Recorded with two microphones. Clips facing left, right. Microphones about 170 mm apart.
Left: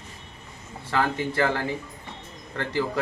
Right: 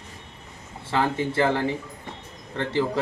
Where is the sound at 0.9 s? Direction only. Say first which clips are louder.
Right 1 dB; 30° right (ahead or behind).